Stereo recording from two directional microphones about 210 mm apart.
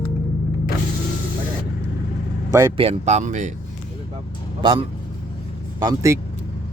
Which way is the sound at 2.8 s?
30° right (ahead or behind).